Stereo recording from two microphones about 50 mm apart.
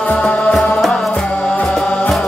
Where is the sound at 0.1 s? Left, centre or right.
Centre.